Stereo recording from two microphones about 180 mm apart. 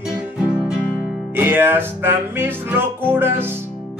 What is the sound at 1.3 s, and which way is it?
Music, 10° right (ahead or behind).